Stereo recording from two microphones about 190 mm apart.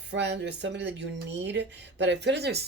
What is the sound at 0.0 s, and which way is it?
Speech, 65° right (ahead or behind).